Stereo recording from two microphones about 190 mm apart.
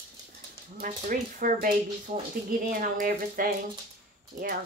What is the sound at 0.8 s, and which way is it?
Speech, 45° right (ahead or behind).